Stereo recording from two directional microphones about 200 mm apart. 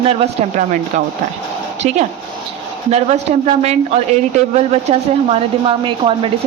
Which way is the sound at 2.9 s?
30° right (ahead or behind).